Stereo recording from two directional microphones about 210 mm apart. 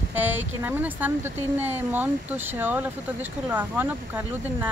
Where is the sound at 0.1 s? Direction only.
10° right (ahead or behind).